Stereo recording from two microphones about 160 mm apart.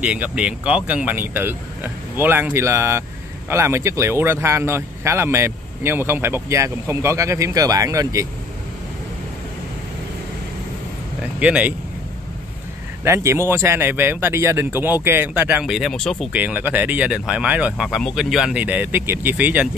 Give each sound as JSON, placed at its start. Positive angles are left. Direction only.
{"t": 0.0, "sound": "a man's voice", "side_deg": -5}
{"t": 11.3, "sound": "speech", "side_deg": -10}
{"t": 13.0, "sound": "a man's voice", "side_deg": -15}
{"t": 16.3, "sound": "a man's voice", "side_deg": -10}